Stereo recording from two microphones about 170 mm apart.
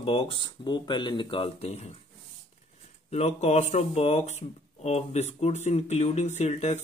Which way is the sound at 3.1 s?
40° left (ahead or behind).